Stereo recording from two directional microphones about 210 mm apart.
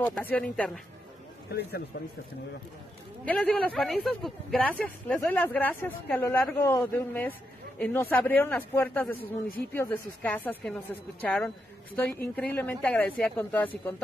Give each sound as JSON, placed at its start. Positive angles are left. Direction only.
{"t": 0.0, "sound": "speech", "side_deg": 10}
{"t": 1.5, "sound": "a man's voice", "side_deg": 50}
{"t": 3.3, "sound": "speech", "side_deg": 5}